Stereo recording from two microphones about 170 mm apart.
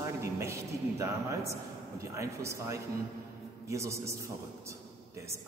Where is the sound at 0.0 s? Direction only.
15° right (ahead or behind).